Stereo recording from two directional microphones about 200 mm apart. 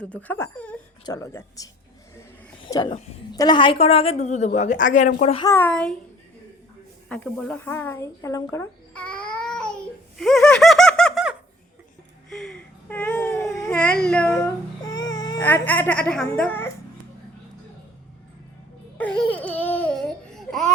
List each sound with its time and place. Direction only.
0.0 s speech: 5° left (ahead or behind)
2.6 s a sound: 20° left (ahead or behind)
3.3 s a woman's voice: 20° left (ahead or behind)
5.5 s speech: 10° left (ahead or behind)
7.1 s speech: 5° left (ahead or behind)
10.2 s laughter: centre (ahead or behind)
12.3 s baby cry: centre (ahead or behind)
14.8 s baby cry: 20° left (ahead or behind)
15.4 s speech: 10° left (ahead or behind)
18.9 s babbling: 5° left (ahead or behind)